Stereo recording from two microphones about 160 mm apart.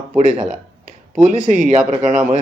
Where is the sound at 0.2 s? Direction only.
50° right (ahead or behind).